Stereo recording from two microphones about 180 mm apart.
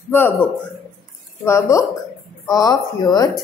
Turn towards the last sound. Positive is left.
turn(degrees=20)  # may be behind; listen again after turning